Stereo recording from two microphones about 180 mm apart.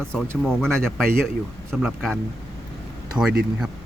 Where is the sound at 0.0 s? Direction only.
5° left (ahead or behind).